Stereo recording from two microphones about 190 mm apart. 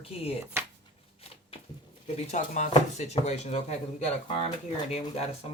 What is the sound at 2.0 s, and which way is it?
Speech, 40° left (ahead or behind).